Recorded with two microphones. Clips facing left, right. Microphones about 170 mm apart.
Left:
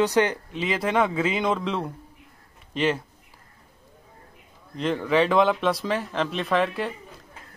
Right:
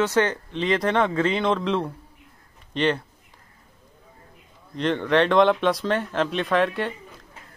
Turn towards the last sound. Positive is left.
turn(degrees=0)  # may be behind; listen again after turning